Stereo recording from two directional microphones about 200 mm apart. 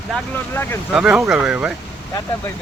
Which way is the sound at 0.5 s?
10° left (ahead or behind).